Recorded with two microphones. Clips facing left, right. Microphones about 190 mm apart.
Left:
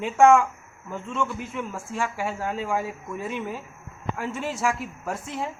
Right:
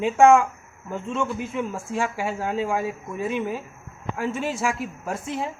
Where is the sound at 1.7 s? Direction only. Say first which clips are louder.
Right 3 dB; 10° right (ahead or behind).